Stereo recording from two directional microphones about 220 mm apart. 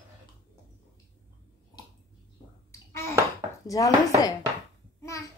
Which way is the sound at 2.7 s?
10° left (ahead or behind).